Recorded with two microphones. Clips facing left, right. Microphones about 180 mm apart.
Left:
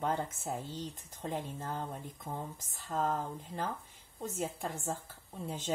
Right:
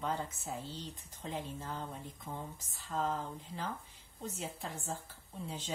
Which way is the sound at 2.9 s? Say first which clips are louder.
Left 2 dB; 50° left (ahead or behind).